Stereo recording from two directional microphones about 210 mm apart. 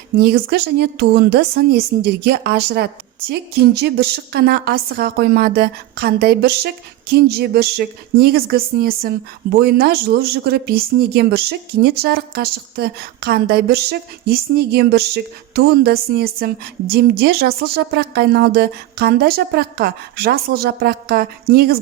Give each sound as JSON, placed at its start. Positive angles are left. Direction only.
{"t": 0.2, "sound": "speech", "side_deg": -50}